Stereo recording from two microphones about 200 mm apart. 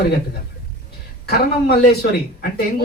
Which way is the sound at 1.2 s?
50° left (ahead or behind).